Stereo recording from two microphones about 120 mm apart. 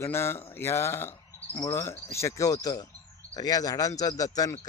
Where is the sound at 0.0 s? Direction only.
20° left (ahead or behind).